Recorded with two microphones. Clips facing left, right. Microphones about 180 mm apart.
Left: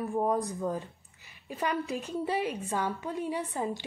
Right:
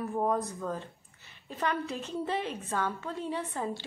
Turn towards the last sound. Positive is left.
turn(degrees=15)  # may be behind; listen again after turning